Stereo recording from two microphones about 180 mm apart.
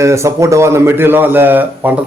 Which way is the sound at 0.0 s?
15° right (ahead or behind).